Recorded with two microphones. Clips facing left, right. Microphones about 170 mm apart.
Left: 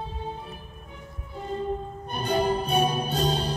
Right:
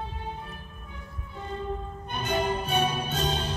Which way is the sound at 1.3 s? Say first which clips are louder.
Left 4 dB; 35° left (ahead or behind).